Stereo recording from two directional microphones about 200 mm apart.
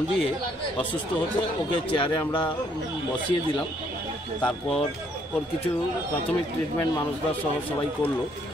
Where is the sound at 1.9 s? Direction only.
25° left (ahead or behind).